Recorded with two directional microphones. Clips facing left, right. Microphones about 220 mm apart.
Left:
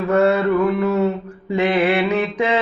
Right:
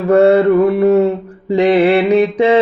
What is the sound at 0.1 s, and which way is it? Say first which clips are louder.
Mantra: right 7 dB; 30° right (ahead or behind).